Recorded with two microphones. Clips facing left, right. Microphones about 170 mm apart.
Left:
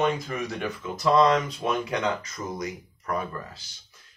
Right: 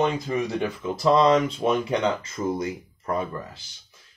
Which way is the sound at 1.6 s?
25° right (ahead or behind).